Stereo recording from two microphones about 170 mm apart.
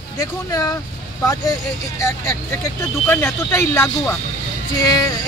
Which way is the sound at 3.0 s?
10° left (ahead or behind).